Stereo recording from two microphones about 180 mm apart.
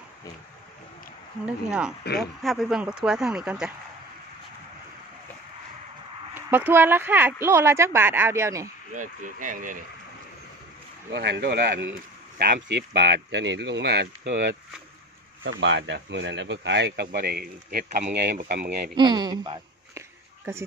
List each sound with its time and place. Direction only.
1.4 s speech: 5° right (ahead or behind)
6.3 s a woman's voice: 10° right (ahead or behind)
8.9 s speech: 45° right (ahead or behind)
11.1 s speech: 70° right (ahead or behind)
15.4 s speech: 90° right; by 18.0 s 55° right (ahead or behind)
18.1 s speech: 70° right (ahead or behind)
18.9 s a woman's voice: 25° right (ahead or behind)